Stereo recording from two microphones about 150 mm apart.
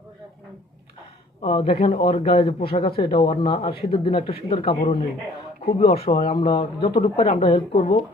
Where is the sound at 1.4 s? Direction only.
35° left (ahead or behind).